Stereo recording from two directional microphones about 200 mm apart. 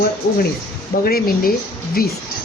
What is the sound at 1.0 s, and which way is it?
Speech, 45° left (ahead or behind).